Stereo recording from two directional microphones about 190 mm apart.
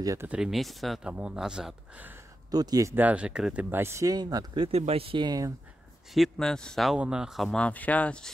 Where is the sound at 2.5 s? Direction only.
20° right (ahead or behind).